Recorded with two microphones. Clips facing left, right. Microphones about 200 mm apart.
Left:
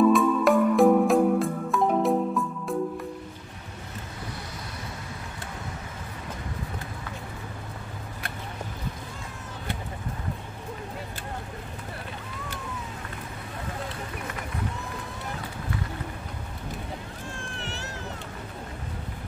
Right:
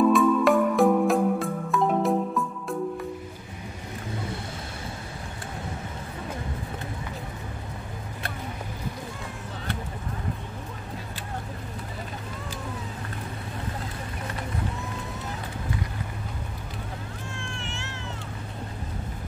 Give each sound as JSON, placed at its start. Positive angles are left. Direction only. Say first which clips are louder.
{"t": 0.1, "sound": "music", "louder": "right 1 dB", "side_deg": 0}
{"t": 17.4, "sound": "cat", "louder": "even", "side_deg": 35}